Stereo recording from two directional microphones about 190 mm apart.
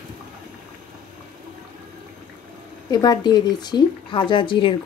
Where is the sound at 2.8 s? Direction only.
20° left (ahead or behind).